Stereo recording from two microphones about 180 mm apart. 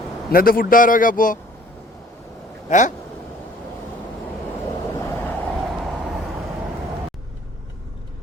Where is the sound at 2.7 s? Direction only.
40° left (ahead or behind).